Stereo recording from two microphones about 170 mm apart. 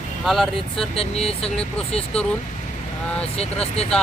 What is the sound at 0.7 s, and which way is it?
Speech, 35° left (ahead or behind).